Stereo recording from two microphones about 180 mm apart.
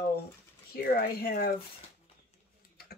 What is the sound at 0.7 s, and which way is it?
Speech, 60° left (ahead or behind).